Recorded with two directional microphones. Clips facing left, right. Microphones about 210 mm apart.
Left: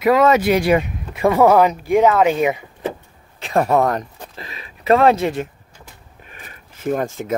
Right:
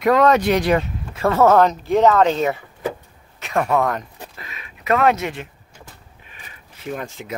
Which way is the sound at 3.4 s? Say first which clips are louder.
Left 3 dB; 35° left (ahead or behind).